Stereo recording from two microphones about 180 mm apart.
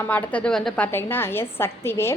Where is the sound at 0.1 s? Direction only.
10° left (ahead or behind).